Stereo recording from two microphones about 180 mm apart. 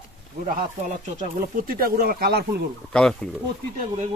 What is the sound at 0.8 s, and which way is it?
Speech, 45° right (ahead or behind).